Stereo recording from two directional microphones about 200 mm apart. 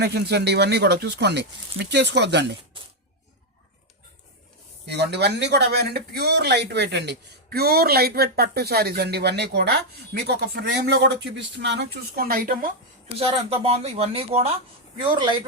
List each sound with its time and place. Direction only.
0.0 s speech: 55° right (ahead or behind)
4.9 s speech: 55° right (ahead or behind)
13.1 s speech: 30° right (ahead or behind)